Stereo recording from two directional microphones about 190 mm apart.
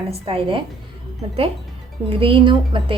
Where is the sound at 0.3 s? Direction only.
30° right (ahead or behind).